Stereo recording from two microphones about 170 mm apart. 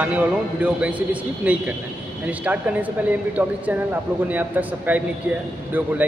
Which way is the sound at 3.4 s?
10° right (ahead or behind).